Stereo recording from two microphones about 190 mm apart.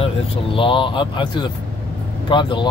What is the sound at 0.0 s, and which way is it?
Speech, 30° left (ahead or behind).